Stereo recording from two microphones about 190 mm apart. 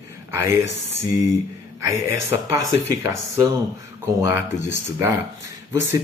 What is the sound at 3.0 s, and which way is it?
Speech, 15° right (ahead or behind).